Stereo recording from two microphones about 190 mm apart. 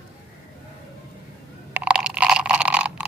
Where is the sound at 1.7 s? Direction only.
5° right (ahead or behind).